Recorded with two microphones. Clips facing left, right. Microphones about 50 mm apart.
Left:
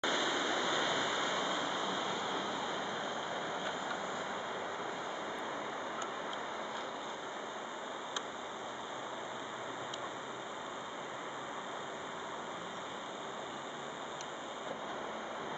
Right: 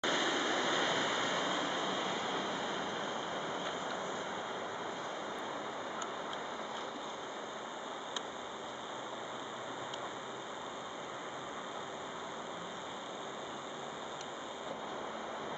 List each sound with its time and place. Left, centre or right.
0.0 s waves: right